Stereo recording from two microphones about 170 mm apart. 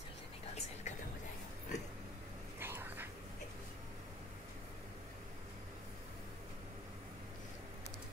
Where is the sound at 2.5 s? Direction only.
15° right (ahead or behind).